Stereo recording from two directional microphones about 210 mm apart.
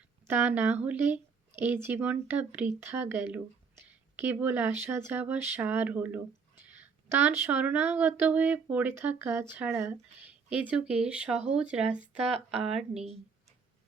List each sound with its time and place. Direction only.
0.3 s speech: 10° right (ahead or behind)